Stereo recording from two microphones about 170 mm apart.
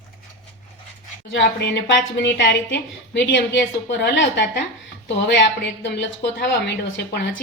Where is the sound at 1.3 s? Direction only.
85° left.